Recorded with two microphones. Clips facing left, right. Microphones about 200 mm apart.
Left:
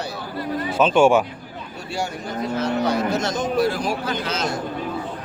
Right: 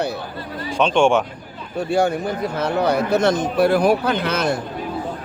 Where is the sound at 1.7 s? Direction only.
55° right (ahead or behind).